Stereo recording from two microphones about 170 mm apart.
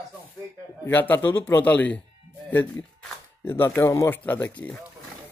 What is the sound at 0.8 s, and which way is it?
Speech, 10° left (ahead or behind).